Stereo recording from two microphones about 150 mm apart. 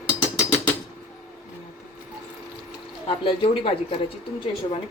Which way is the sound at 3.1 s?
35° left (ahead or behind).